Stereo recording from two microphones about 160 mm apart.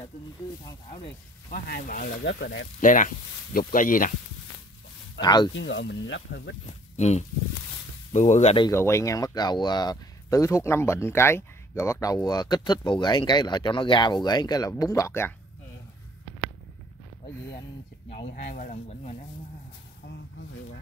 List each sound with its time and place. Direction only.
1.5 s speech: 65° left (ahead or behind); by 2.5 s 90° left
2.8 s speech: 50° left (ahead or behind)
5.2 s speech: 25° left (ahead or behind)
5.6 s speech: 90° left
7.0 s speech: 45° left (ahead or behind)
8.7 s speech: 15° left (ahead or behind)
18.3 s speech: 55° left (ahead or behind)